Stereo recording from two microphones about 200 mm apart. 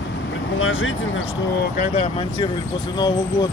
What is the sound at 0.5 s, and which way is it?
Speech, 80° left.